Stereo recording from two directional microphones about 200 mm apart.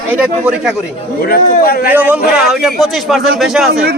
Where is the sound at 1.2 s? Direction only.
50° left (ahead or behind).